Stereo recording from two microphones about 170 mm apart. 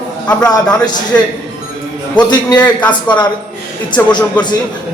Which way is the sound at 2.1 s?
25° left (ahead or behind).